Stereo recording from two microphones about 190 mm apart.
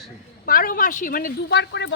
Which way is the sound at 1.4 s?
65° left (ahead or behind).